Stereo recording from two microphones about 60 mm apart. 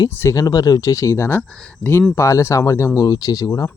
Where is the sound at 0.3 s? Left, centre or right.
Left.